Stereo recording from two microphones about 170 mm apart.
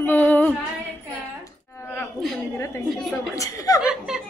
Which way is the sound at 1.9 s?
10° left (ahead or behind).